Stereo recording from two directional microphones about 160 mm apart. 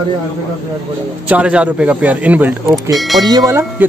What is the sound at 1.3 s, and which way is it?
A man's voice, 5° right (ahead or behind).